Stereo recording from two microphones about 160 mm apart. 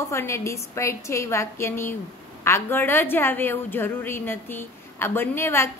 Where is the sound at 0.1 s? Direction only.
15° left (ahead or behind).